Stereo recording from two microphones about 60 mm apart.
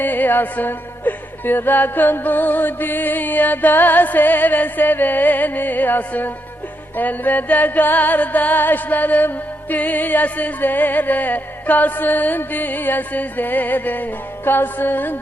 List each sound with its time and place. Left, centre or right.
0.0 s music: left